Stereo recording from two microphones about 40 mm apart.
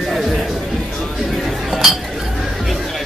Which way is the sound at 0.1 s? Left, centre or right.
Centre.